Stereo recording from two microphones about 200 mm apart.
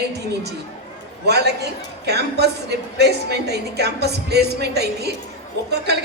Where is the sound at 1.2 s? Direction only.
55° right (ahead or behind).